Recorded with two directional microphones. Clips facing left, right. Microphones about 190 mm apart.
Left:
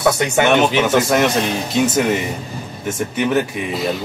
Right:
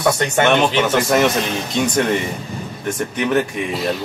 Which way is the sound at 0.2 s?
5° left (ahead or behind).